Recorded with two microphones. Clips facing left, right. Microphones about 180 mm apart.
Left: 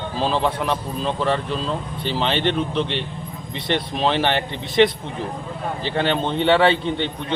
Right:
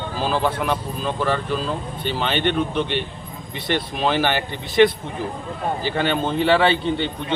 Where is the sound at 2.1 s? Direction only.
30° left (ahead or behind).